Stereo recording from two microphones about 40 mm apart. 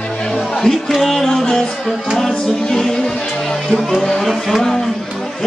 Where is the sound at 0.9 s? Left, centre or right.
Centre.